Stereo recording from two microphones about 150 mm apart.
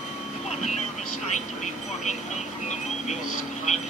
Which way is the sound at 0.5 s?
50° left (ahead or behind).